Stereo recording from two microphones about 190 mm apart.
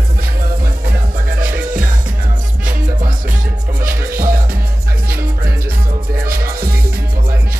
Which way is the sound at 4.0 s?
50° right (ahead or behind).